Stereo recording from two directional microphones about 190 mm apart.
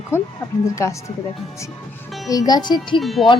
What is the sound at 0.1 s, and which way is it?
Speech, 15° left (ahead or behind).